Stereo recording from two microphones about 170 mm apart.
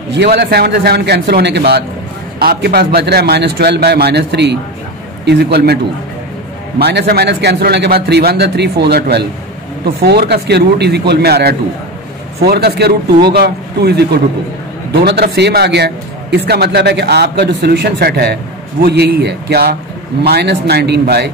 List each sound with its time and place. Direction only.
0.1 s a man's voice: 85° right
2.3 s a man's voice: 65° right (ahead or behind)
6.8 s a man's voice: 75° right (ahead or behind)